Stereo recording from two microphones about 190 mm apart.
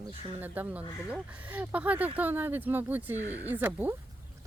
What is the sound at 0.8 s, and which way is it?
Speech, 15° left (ahead or behind).